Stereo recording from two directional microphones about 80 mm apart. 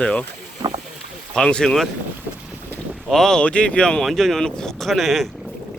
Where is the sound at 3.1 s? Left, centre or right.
Centre.